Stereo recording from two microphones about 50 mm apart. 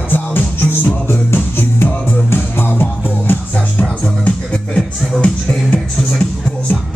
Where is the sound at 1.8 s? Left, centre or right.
Left.